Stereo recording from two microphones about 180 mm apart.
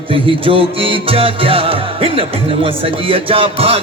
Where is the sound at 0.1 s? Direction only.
30° right (ahead or behind).